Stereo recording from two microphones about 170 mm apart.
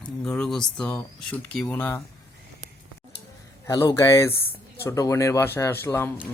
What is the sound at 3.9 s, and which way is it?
Speech, 15° left (ahead or behind).